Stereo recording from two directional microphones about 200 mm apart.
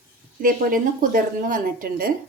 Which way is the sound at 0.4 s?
45° right (ahead or behind).